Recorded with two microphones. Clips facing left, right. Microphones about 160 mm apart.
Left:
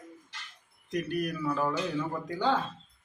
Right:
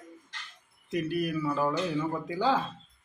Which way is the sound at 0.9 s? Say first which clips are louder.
Right 2 dB; 5° right (ahead or behind).